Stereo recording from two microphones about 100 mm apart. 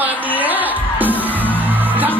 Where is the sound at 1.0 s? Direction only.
15° right (ahead or behind).